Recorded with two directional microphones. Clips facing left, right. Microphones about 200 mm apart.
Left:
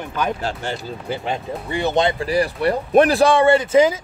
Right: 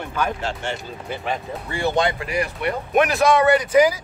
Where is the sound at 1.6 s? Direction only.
20° left (ahead or behind).